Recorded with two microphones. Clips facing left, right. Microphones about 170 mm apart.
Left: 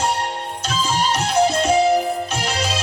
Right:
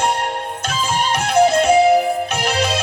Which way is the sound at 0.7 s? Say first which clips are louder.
Even; 55° right (ahead or behind).